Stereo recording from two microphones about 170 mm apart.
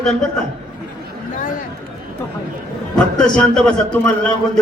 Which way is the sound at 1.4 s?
50° left (ahead or behind).